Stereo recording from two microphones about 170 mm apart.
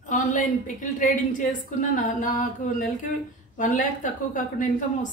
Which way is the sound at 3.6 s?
50° left (ahead or behind).